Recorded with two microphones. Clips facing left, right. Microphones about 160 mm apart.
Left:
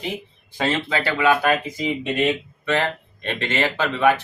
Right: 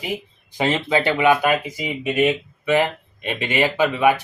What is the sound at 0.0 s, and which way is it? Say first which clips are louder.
Speech: right 1 dB; 10° right (ahead or behind).